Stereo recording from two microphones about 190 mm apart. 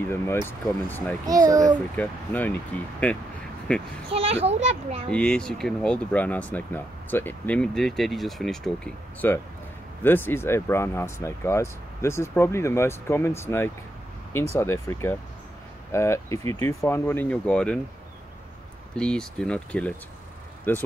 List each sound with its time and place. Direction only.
0.1 s speech: 10° left (ahead or behind)
1.2 s a child's voice: 20° right (ahead or behind)
2.0 s speech: 10° left (ahead or behind)
4.1 s a child's voice: 30° right (ahead or behind)
5.1 s speech: 5° left (ahead or behind)
18.9 s speech: 5° left (ahead or behind)